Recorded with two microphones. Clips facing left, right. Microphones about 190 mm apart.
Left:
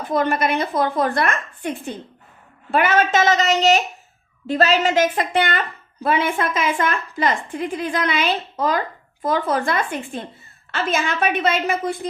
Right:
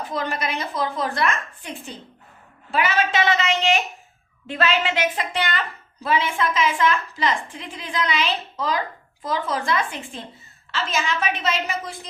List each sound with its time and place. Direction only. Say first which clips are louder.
0.0 s a woman's voice: left 7 dB; 55° left (ahead or behind)